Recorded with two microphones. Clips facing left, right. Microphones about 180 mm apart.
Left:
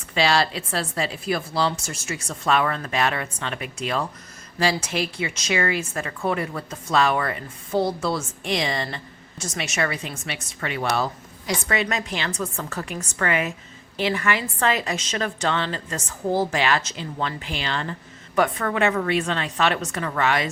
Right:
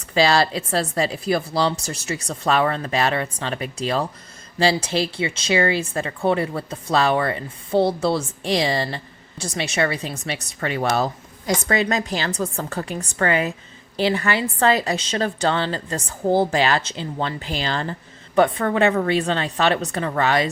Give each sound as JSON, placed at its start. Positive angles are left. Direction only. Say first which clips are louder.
{"t": 0.1, "sound": "speech", "louder": "right 3 dB", "side_deg": -40}